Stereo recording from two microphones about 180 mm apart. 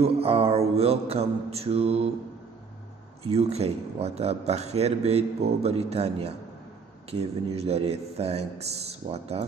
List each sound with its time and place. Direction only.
0.0 s speech: 35° right (ahead or behind)
3.3 s speech: 35° right (ahead or behind)